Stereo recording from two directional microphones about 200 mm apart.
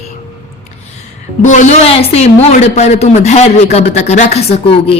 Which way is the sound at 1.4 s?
40° left (ahead or behind).